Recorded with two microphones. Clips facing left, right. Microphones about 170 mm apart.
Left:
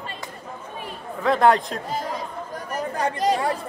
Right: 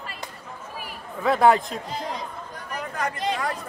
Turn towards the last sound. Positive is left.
turn(degrees=35)  # may be behind; listen again after turning